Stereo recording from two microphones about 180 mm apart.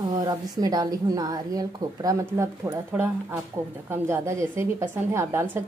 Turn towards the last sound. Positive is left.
turn(degrees=-10)  # may be behind; listen again after turning